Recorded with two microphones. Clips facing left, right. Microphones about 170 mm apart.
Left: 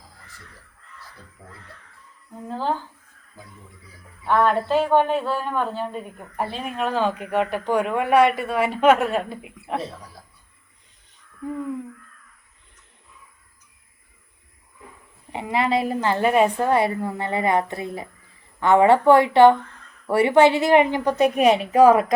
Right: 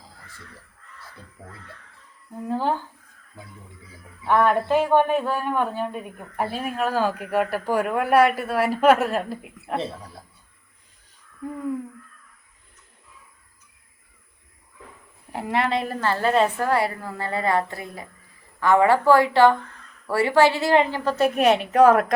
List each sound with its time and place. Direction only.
2.5 s speech: 15° right (ahead or behind)
4.2 s a man's voice: 10° right (ahead or behind)
15.3 s a man's voice: centre (ahead or behind)
15.9 s a woman's voice: 15° left (ahead or behind)
21.2 s a man's voice: centre (ahead or behind)